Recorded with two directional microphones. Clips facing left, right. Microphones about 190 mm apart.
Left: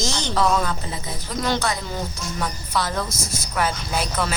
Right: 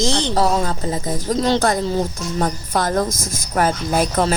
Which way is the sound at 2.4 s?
50° right (ahead or behind).